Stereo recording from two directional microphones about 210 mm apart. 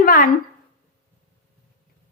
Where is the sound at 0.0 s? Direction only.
40° left (ahead or behind).